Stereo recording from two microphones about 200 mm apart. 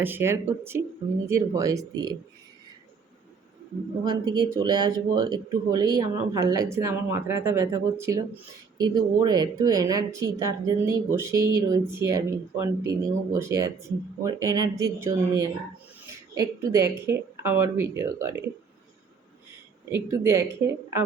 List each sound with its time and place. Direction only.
0.0 s speech: 10° right (ahead or behind)
4.0 s speech: 20° right (ahead or behind)
19.9 s speech: 15° right (ahead or behind)